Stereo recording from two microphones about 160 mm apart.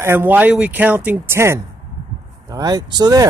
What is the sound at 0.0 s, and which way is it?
Speech, 15° right (ahead or behind).